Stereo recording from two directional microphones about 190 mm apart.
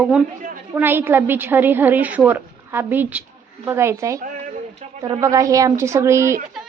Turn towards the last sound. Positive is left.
turn(degrees=-15)  # may be behind; listen again after turning